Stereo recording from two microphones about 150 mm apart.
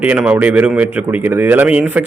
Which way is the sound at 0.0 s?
10° right (ahead or behind).